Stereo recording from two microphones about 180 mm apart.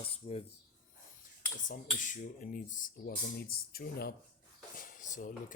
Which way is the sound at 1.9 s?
45° left (ahead or behind).